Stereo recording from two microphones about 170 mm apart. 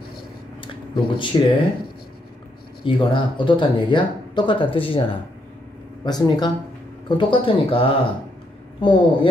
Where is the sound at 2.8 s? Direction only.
30° left (ahead or behind).